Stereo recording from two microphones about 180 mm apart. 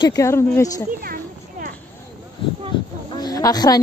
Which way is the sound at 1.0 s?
55° right (ahead or behind).